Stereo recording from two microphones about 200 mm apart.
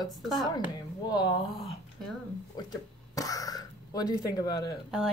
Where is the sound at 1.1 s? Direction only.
25° left (ahead or behind).